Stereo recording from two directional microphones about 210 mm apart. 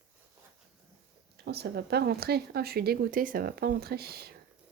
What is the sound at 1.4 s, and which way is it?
Speech, 50° right (ahead or behind).